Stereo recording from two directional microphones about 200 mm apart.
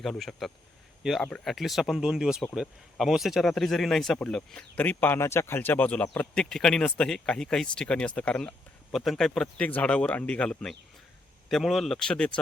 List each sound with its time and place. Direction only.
0.0 s speech: centre (ahead or behind)